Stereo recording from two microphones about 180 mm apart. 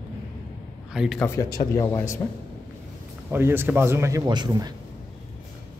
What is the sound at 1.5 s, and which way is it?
Speech, 20° left (ahead or behind).